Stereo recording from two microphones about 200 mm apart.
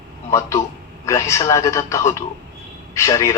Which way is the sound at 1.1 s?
15° left (ahead or behind).